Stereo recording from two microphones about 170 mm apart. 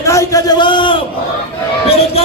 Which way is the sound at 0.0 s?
20° left (ahead or behind).